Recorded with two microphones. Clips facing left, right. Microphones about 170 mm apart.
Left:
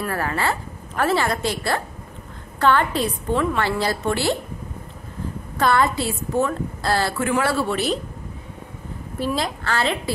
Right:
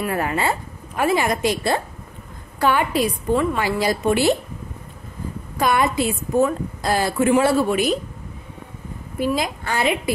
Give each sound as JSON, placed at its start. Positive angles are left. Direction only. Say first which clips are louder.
{"t": 0.0, "sound": "a woman's voice", "louder": "right 2 dB", "side_deg": -20}
{"t": 5.6, "sound": "a woman's voice", "louder": "even", "side_deg": -15}
{"t": 9.2, "sound": "a woman's voice", "louder": "right 2 dB", "side_deg": -10}